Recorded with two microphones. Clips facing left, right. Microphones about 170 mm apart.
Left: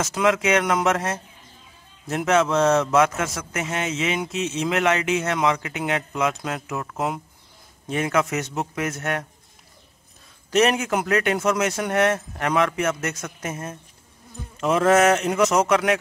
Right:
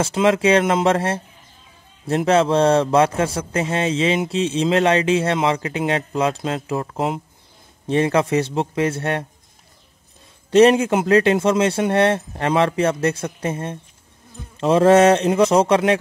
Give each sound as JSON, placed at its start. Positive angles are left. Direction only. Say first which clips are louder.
{"t": 0.0, "sound": "a man's voice", "louder": "right 4 dB", "side_deg": -30}
{"t": 10.5, "sound": "a man's voice", "louder": "right 7 dB", "side_deg": -30}